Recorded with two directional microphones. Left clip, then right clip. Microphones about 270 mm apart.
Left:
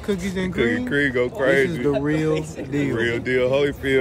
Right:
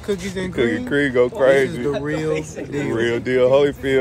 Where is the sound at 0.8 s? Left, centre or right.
Centre.